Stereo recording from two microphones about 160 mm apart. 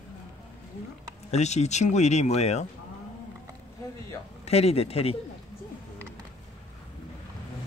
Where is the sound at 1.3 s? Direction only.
45° left (ahead or behind).